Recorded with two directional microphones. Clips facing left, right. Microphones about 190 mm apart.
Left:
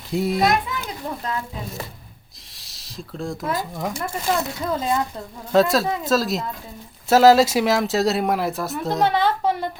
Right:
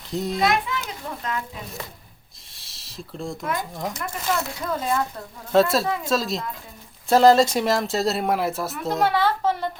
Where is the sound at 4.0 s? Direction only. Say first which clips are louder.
Left 3 dB; 30° left (ahead or behind).